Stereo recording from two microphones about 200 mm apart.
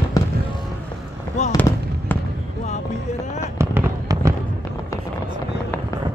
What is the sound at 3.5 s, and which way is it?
Fireworks, 15° right (ahead or behind).